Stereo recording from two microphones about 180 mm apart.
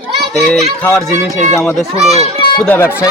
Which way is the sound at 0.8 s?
5° left (ahead or behind).